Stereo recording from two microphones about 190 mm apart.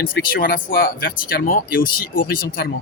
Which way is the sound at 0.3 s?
50° left (ahead or behind).